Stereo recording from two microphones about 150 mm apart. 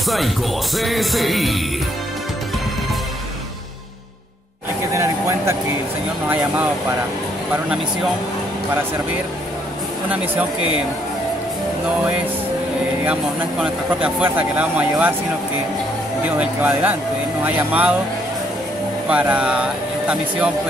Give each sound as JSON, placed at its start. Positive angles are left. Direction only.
{"t": 0.0, "sound": "music", "side_deg": 0}
{"t": 4.9, "sound": "a sound", "side_deg": -20}
{"t": 6.2, "sound": "speech", "side_deg": -10}
{"t": 10.0, "sound": "speech", "side_deg": -10}
{"t": 13.0, "sound": "speech", "side_deg": -10}
{"t": 16.3, "sound": "speech", "side_deg": -10}
{"t": 19.0, "sound": "speech", "side_deg": -10}